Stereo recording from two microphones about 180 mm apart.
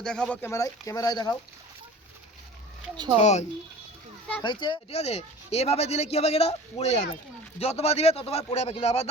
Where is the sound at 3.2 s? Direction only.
40° left (ahead or behind).